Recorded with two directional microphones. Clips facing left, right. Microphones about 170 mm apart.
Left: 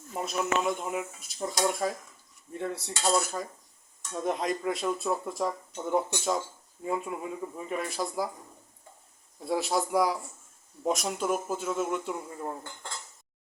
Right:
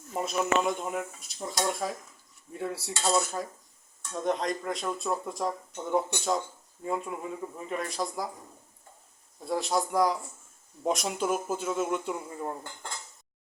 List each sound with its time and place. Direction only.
0.2 s speech: centre (ahead or behind)
9.5 s speech: 5° left (ahead or behind)